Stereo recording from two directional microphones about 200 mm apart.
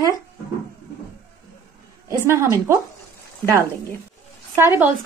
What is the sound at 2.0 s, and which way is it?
Speech, 15° right (ahead or behind).